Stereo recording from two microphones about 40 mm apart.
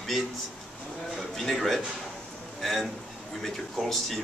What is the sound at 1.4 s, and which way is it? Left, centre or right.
A man's voice, centre.